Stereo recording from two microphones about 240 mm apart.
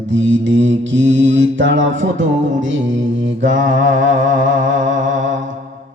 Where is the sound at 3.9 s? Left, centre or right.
Right.